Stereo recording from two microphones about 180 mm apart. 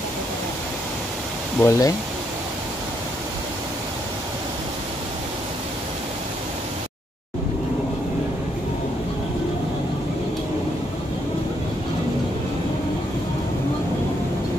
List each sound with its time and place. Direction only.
1.6 s speech: 20° left (ahead or behind)